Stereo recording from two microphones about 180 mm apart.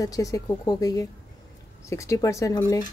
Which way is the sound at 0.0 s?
20° left (ahead or behind).